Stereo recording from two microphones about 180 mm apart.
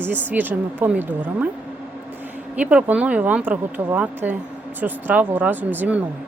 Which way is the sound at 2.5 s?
5° right (ahead or behind).